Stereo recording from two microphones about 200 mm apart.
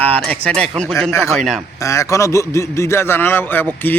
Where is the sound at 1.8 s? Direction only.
15° left (ahead or behind).